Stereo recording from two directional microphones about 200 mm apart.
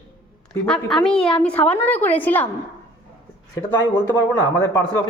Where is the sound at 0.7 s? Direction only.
5° left (ahead or behind).